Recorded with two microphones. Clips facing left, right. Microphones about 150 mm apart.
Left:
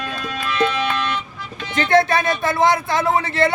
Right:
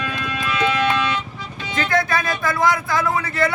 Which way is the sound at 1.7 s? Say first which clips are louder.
Left 5 dB; 25° left (ahead or behind).